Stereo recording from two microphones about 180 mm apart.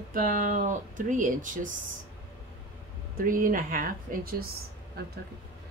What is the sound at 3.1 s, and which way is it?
Speech, 50° right (ahead or behind).